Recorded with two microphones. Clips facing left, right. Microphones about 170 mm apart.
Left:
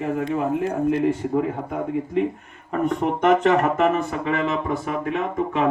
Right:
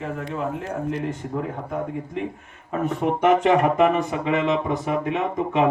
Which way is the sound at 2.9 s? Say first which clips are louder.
Even; 10° right (ahead or behind).